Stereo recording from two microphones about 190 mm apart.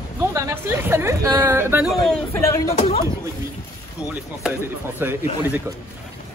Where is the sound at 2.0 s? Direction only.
5° left (ahead or behind).